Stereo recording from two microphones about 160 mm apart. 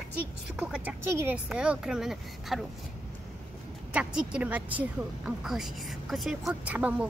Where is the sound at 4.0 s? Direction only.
5° right (ahead or behind).